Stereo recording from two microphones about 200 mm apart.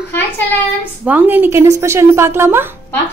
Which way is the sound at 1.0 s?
10° right (ahead or behind).